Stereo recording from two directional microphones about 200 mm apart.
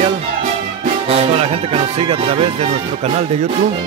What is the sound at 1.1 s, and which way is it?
Speech, 30° right (ahead or behind).